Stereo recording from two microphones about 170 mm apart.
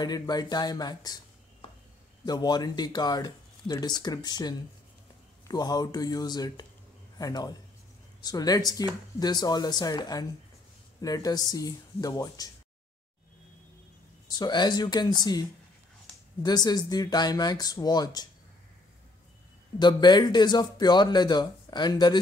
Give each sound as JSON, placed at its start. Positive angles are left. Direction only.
{"t": 0.0, "sound": "speech", "side_deg": 25}
{"t": 2.2, "sound": "speech", "side_deg": 25}
{"t": 14.2, "sound": "speech", "side_deg": 25}
{"t": 16.4, "sound": "speech", "side_deg": 25}
{"t": 19.8, "sound": "speech", "side_deg": 25}